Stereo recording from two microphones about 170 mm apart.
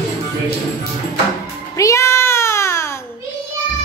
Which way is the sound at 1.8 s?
15° left (ahead or behind).